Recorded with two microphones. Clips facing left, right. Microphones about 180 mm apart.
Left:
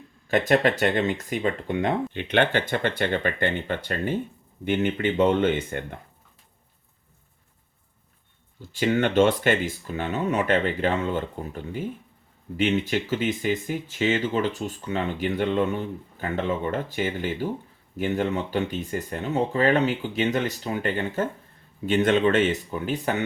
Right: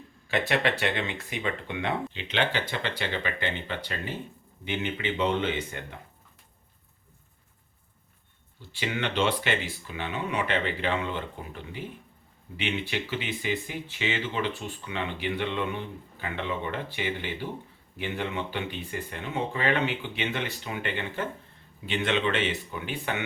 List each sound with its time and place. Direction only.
0.3 s speech: 45° left (ahead or behind)
8.7 s speech: 45° left (ahead or behind)